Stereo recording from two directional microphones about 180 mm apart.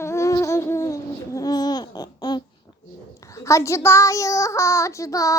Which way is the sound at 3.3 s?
15° left (ahead or behind).